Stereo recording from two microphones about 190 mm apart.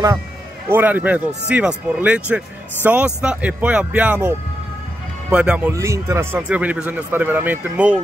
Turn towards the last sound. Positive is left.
turn(degrees=-10)  # may be behind; listen again after turning